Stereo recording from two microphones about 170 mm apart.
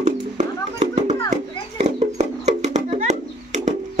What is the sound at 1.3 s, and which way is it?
Music, 40° right (ahead or behind).